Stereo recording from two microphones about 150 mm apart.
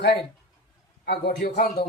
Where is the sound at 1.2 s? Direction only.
90° left.